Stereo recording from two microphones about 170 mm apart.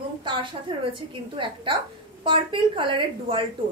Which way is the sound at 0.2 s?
30° right (ahead or behind).